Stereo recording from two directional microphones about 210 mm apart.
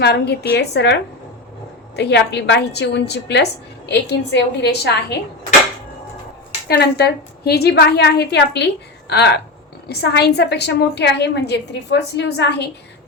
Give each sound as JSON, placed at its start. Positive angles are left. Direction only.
{"t": 0.0, "sound": "a woman's voice", "side_deg": 50}
{"t": 2.0, "sound": "a woman's voice", "side_deg": 55}
{"t": 6.7, "sound": "a woman's voice", "side_deg": 50}